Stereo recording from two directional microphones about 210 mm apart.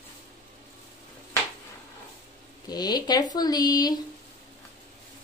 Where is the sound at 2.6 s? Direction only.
20° left (ahead or behind).